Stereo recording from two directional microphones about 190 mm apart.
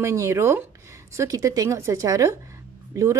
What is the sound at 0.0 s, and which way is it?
Speech, 15° right (ahead or behind).